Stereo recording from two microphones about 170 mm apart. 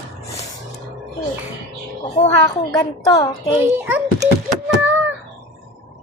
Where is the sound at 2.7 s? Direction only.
20° left (ahead or behind).